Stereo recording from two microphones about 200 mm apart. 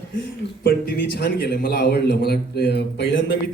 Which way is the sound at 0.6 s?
50° left (ahead or behind).